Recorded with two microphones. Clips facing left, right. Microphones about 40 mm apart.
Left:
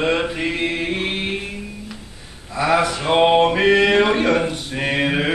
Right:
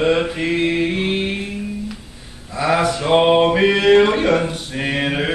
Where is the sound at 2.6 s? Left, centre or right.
Centre.